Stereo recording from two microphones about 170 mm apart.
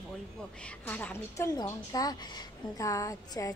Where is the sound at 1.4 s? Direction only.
25° left (ahead or behind).